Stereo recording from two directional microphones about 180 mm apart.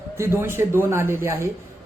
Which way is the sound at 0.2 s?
15° right (ahead or behind).